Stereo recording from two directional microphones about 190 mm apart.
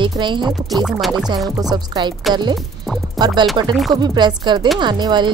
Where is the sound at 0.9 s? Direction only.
Centre (ahead or behind).